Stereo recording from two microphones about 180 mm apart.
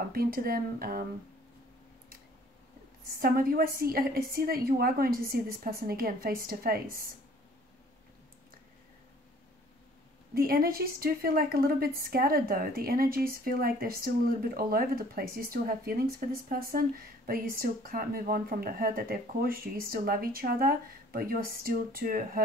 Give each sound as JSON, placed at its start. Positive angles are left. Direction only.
{"t": 0.1, "sound": "speech", "side_deg": -55}
{"t": 3.1, "sound": "speech", "side_deg": -55}
{"t": 10.3, "sound": "speech", "side_deg": -55}